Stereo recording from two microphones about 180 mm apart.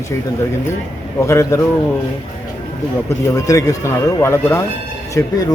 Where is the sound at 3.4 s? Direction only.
20° left (ahead or behind).